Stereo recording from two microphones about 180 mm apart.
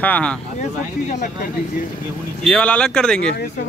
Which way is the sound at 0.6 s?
40° left (ahead or behind).